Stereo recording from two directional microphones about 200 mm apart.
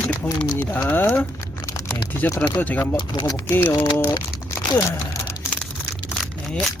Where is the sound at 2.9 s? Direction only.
20° left (ahead or behind).